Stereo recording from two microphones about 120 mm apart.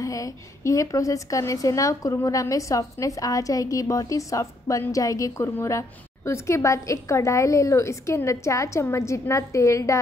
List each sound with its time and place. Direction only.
0.0 s a woman's voice: 25° left (ahead or behind)